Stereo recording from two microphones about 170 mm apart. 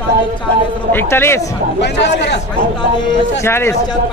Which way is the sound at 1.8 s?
90° left.